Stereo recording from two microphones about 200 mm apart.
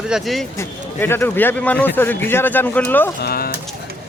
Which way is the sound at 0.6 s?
10° left (ahead or behind).